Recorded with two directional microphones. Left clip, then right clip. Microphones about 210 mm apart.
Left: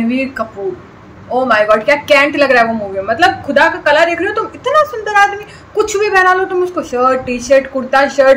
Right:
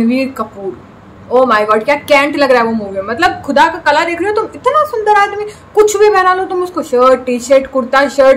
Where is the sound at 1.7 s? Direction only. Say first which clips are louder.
Even; 10° right (ahead or behind).